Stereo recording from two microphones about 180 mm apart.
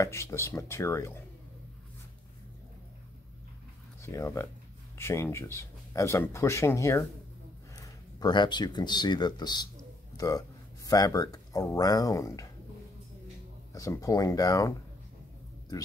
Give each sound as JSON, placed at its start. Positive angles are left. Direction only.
{"t": 0.0, "sound": "speech", "side_deg": 15}
{"t": 4.0, "sound": "a man's voice", "side_deg": 15}
{"t": 13.7, "sound": "speech", "side_deg": 20}